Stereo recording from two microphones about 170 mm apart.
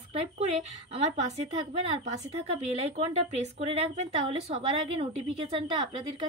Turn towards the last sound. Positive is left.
turn(degrees=-30)  # may be behind; listen again after turning